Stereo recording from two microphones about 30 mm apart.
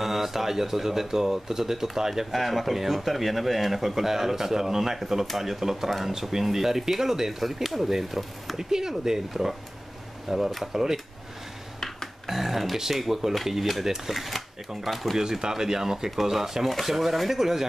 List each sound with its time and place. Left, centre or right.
0.0 s speech: centre
2.3 s speech: centre
5.9 s speech: centre
8.5 s speech: centre
12.3 s speech: centre
15.1 s speech: right